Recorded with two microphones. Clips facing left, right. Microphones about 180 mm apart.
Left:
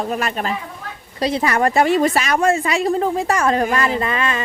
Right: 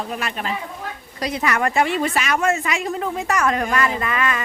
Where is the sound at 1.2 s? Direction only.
30° left (ahead or behind).